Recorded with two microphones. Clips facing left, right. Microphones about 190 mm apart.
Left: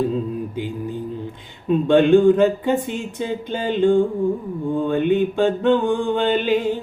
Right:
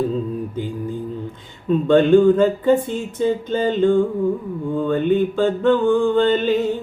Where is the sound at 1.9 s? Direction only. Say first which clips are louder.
Right 1 dB; 15° left (ahead or behind).